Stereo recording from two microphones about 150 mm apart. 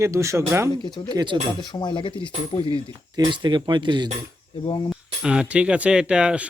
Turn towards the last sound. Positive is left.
turn(degrees=-5)  # may be behind; listen again after turning